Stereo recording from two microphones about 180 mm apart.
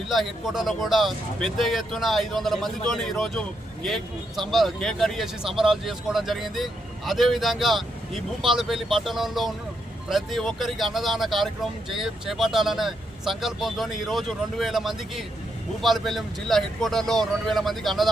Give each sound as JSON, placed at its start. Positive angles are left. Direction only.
{"t": 0.1, "sound": "speech", "side_deg": 0}